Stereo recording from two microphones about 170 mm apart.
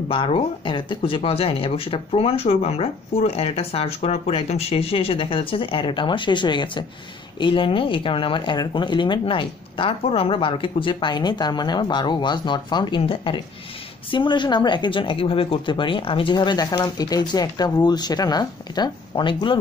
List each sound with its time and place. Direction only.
0.1 s speech: 30° left (ahead or behind)